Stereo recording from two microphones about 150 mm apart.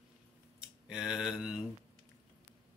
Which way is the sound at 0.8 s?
5° right (ahead or behind).